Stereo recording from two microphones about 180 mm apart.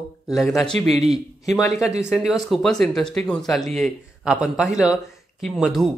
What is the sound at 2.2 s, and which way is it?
A man's voice, centre (ahead or behind).